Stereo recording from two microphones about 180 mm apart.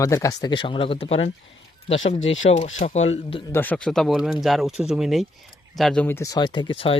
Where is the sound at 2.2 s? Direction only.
90° left.